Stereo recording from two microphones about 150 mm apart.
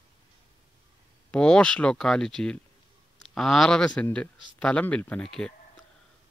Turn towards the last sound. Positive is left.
turn(degrees=5)  # may be behind; listen again after turning